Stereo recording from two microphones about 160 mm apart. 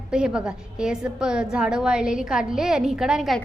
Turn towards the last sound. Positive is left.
turn(degrees=-5)  # may be behind; listen again after turning